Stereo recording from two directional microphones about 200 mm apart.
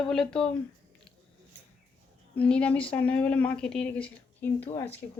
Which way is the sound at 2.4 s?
5° left (ahead or behind).